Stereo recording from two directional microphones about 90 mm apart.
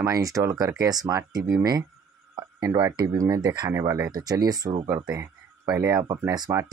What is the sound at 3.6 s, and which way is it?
Speech, 30° right (ahead or behind).